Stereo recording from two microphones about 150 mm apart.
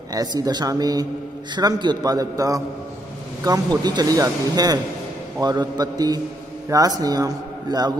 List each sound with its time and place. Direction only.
0.1 s speech: 25° right (ahead or behind)